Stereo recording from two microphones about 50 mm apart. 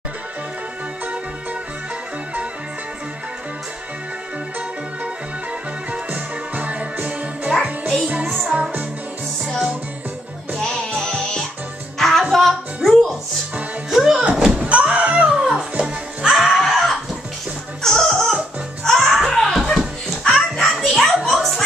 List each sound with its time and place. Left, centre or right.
5.9 s music: right
10.9 s music: centre
13.8 s music: centre
14.3 s a sound: centre
14.7 s door: right
15.3 s music: centre
16.3 s music: centre
17.8 s chicken: centre
18.9 s music: centre
21.3 s a sound: centre